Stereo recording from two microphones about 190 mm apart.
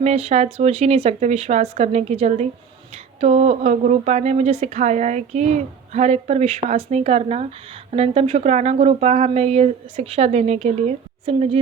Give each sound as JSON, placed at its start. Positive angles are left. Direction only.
{"t": 0.0, "sound": "a woman's voice", "side_deg": -35}